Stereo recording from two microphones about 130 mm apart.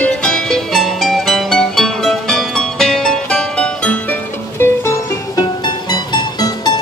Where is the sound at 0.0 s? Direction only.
5° left (ahead or behind).